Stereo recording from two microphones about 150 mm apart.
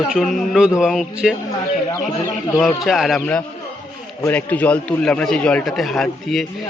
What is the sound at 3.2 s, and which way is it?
A man's voice, 10° left (ahead or behind).